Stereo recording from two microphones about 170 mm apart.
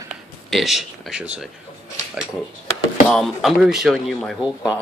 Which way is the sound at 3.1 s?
Centre (ahead or behind).